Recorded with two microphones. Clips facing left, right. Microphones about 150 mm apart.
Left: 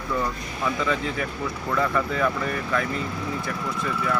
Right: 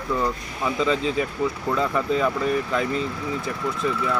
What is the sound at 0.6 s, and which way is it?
Speech, 20° right (ahead or behind).